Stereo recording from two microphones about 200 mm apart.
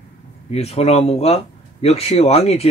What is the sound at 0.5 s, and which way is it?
Speech, 30° left (ahead or behind).